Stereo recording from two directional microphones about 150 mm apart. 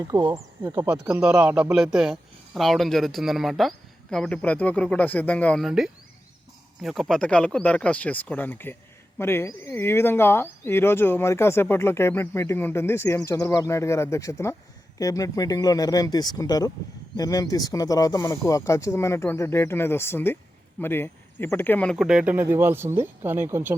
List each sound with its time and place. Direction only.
0.1 s speech: 25° right (ahead or behind)
0.9 s speech: 10° right (ahead or behind); by 5.6 s 10° left (ahead or behind)
5.6 s speech: 5° right (ahead or behind)
21.9 s speech: 5° right (ahead or behind)